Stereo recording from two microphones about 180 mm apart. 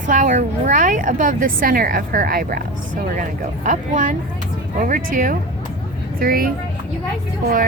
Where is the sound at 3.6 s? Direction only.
45° right (ahead or behind).